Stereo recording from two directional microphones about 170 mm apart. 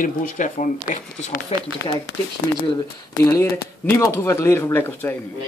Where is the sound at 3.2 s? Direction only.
15° left (ahead or behind).